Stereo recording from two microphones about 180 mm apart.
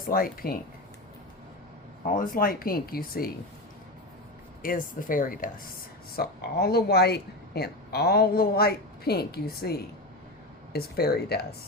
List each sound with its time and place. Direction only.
0.1 s speech: 55° left (ahead or behind)
2.0 s speech: 50° left (ahead or behind)
4.6 s speech: 50° left (ahead or behind)